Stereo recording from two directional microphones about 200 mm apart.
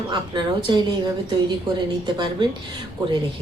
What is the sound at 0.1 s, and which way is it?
Speech, 25° right (ahead or behind).